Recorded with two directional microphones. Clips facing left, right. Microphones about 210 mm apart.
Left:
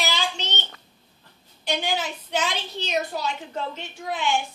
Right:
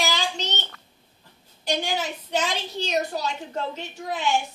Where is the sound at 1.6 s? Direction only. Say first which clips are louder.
Even; 40° right (ahead or behind).